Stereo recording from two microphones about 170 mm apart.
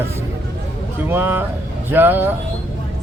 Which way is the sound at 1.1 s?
10° right (ahead or behind).